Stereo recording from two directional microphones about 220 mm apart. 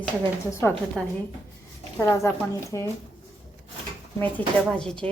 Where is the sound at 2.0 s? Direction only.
15° left (ahead or behind).